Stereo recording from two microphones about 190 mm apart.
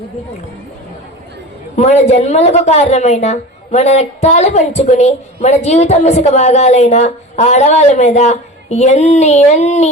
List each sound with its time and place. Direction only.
1.7 s a woman's voice: 35° left (ahead or behind)